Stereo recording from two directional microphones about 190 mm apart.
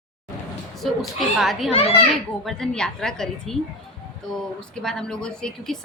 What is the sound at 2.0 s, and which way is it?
A child's voice, centre (ahead or behind).